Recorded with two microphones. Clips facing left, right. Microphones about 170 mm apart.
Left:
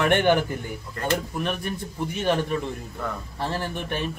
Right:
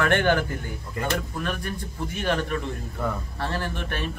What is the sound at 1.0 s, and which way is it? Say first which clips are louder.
Speech: even; 10° right (ahead or behind).